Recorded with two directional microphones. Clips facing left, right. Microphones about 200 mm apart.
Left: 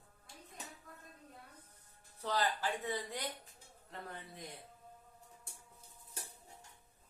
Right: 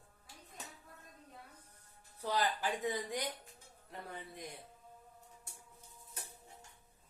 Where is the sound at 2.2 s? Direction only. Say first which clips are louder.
Right 1 dB; 15° right (ahead or behind).